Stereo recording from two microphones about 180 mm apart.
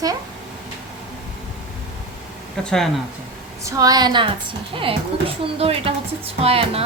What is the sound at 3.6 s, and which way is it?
A woman's voice, 20° right (ahead or behind).